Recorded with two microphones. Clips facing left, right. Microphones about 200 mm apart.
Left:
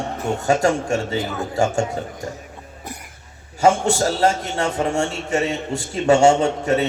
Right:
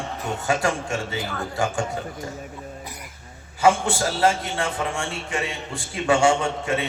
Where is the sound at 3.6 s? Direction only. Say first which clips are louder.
Left 3 dB; 45° left (ahead or behind).